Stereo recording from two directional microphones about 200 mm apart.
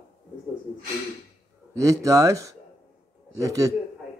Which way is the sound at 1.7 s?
15° right (ahead or behind).